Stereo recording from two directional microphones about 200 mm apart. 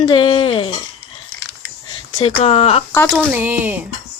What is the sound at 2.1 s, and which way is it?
Speech, 30° left (ahead or behind).